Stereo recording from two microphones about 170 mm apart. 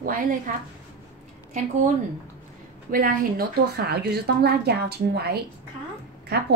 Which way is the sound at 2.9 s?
55° right (ahead or behind).